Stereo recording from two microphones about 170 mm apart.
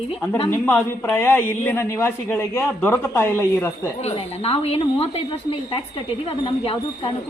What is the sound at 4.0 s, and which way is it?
A woman's voice, 35° left (ahead or behind).